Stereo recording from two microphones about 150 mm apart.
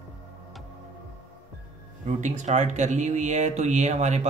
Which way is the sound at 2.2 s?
50° right (ahead or behind).